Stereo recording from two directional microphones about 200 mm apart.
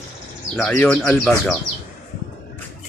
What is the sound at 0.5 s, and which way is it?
Speech, 5° left (ahead or behind).